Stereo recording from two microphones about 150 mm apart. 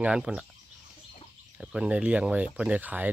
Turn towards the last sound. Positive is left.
turn(degrees=-10)  # may be behind; listen again after turning